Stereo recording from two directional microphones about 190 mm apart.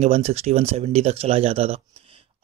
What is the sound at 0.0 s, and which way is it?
Speech, 35° right (ahead or behind).